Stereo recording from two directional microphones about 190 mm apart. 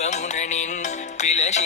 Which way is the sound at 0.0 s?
40° left (ahead or behind).